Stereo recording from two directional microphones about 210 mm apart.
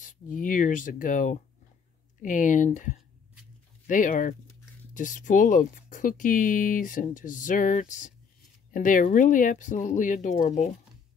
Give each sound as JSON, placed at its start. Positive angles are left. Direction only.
{"t": 0.0, "sound": "speech", "side_deg": 40}